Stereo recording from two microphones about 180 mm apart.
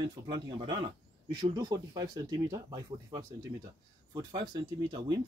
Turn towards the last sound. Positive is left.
turn(degrees=-25)  # may be behind; listen again after turning